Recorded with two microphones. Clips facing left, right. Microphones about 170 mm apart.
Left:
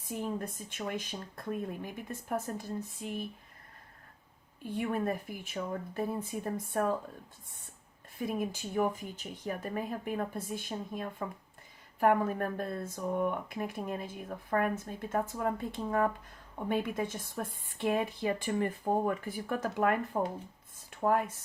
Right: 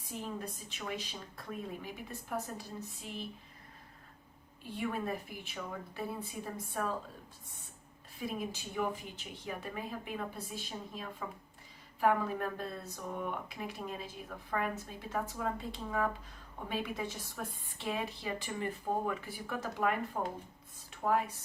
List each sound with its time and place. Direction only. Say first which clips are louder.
0.0 s speech: left 5 dB; 50° left (ahead or behind)
4.6 s speech: left 4 dB; 50° left (ahead or behind)
8.2 s speech: left 5 dB; 50° left (ahead or behind)
21.0 s speech: left 3 dB; 50° left (ahead or behind)